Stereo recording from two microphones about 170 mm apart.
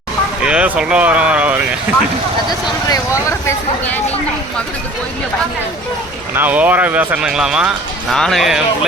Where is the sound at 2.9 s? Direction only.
15° left (ahead or behind).